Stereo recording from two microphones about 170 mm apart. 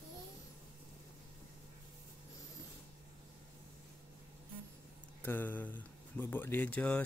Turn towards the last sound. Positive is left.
turn(degrees=10)  # may be behind; listen again after turning